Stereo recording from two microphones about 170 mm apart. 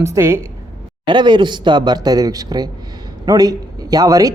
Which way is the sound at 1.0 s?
25° right (ahead or behind).